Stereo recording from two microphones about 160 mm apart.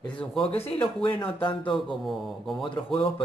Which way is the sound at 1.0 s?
30° left (ahead or behind).